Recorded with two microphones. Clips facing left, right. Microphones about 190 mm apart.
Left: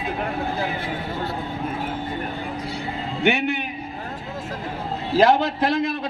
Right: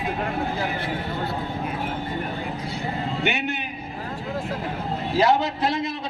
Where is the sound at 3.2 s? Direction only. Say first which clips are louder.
Left 8 dB; 55° left (ahead or behind).